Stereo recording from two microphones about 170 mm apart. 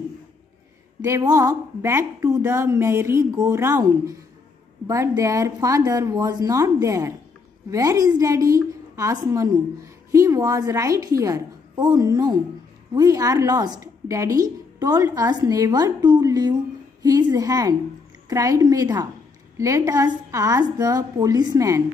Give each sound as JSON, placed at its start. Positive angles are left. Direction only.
{"t": 1.0, "sound": "a woman's voice", "side_deg": -20}